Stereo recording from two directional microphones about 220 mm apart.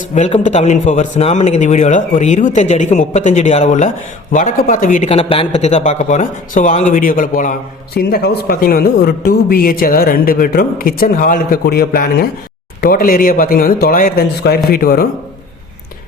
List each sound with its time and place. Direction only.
0.1 s a man's voice: 30° left (ahead or behind)